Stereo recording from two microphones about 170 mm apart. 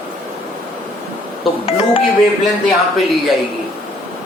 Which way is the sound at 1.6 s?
35° left (ahead or behind).